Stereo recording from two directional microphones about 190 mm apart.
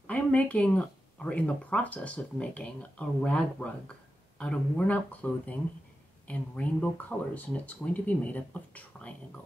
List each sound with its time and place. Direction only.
0.0 s speech: 5° left (ahead or behind)